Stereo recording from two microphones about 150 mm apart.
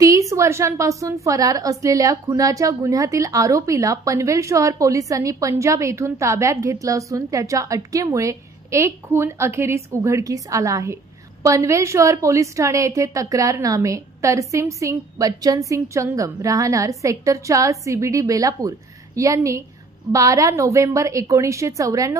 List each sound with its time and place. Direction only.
0.0 s a woman's voice: 20° right (ahead or behind)